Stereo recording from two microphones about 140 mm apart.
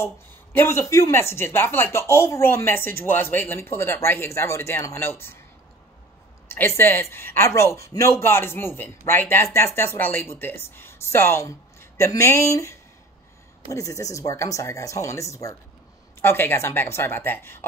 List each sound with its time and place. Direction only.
0.0 s speech: 15° left (ahead or behind)
6.5 s speech: 15° left (ahead or behind)